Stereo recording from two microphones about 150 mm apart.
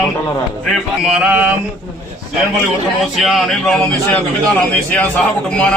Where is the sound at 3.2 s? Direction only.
Centre (ahead or behind).